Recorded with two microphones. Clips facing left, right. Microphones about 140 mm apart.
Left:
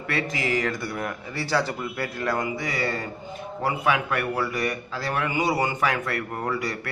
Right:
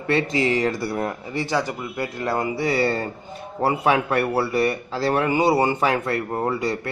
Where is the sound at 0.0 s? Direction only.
25° right (ahead or behind).